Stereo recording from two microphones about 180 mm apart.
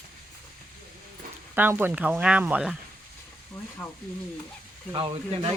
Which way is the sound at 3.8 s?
5° left (ahead or behind).